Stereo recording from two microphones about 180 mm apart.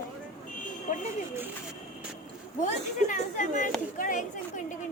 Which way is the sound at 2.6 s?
45° left (ahead or behind).